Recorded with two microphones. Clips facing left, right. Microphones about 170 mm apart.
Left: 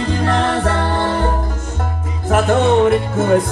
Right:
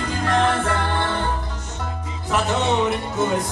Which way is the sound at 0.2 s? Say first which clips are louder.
Left 1 dB; 35° left (ahead or behind).